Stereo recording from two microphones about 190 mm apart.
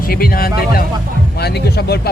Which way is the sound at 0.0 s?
50° left (ahead or behind).